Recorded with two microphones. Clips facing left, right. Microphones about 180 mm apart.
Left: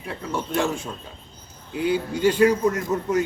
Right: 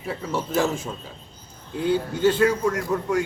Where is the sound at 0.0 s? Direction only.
Centre (ahead or behind).